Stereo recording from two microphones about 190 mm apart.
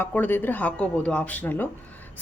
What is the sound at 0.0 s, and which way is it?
A woman's voice, 10° left (ahead or behind).